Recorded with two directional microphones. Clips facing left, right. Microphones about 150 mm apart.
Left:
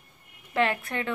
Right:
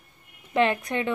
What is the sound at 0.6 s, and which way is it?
Speech, 20° right (ahead or behind).